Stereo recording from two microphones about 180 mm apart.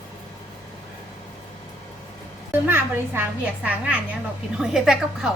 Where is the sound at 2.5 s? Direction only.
10° right (ahead or behind).